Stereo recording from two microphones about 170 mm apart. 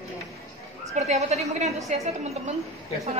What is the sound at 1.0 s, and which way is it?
A woman's voice, 40° right (ahead or behind).